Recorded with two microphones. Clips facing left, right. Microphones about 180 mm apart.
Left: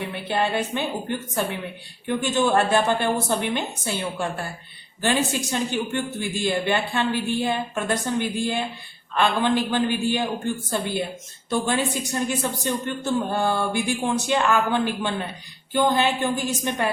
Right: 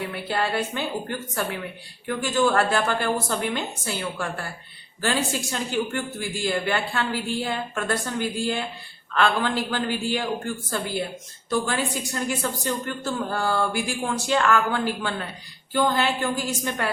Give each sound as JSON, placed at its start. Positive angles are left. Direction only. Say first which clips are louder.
{"t": 0.1, "sound": "speech", "louder": "left 5 dB", "side_deg": 20}